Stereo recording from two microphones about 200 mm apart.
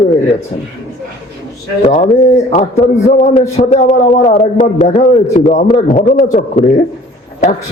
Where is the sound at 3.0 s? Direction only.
35° left (ahead or behind).